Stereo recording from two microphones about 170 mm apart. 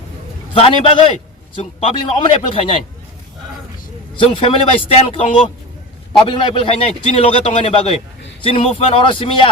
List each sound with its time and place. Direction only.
0.5 s a man's voice: 30° left (ahead or behind)
4.2 s a man's voice: 30° left (ahead or behind)